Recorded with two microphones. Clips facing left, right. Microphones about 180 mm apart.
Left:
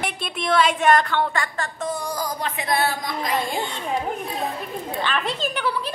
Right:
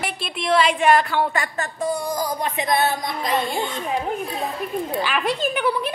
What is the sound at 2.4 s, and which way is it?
Speech, 20° right (ahead or behind).